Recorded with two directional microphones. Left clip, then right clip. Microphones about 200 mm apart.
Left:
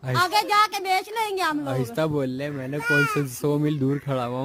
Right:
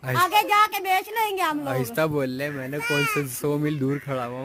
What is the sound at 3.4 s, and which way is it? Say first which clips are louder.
Speech: left 1 dB; 15° left (ahead or behind).